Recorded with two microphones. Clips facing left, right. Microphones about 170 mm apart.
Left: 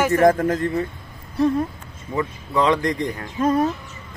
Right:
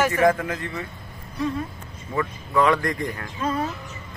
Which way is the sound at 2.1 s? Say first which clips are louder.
Left 1 dB; 20° left (ahead or behind).